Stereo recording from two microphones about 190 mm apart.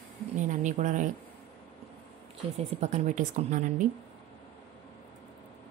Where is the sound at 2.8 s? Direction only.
40° right (ahead or behind).